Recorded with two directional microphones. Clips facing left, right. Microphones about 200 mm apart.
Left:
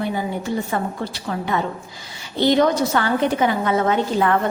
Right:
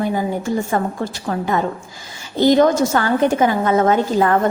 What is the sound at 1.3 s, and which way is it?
A woman's voice, 45° right (ahead or behind).